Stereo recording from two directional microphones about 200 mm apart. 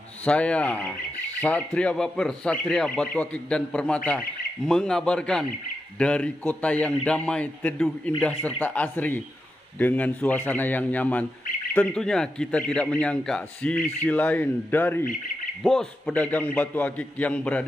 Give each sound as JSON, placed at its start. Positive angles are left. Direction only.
{"t": 0.2, "sound": "a man's voice", "side_deg": 5}